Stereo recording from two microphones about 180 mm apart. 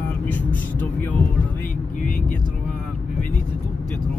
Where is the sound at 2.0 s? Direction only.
50° left (ahead or behind).